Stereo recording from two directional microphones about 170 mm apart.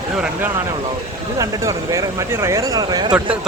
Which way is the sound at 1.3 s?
20° right (ahead or behind).